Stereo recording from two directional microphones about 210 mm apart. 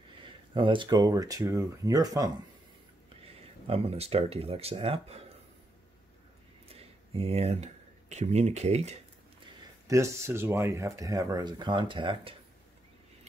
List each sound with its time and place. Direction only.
0.6 s speech: 25° right (ahead or behind)
3.6 s speech: 30° right (ahead or behind)
6.7 s speech: 30° right (ahead or behind)
9.8 s speech: 15° right (ahead or behind)